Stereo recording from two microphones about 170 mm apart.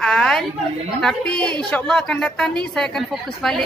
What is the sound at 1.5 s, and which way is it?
A woman's voice, 5° left (ahead or behind).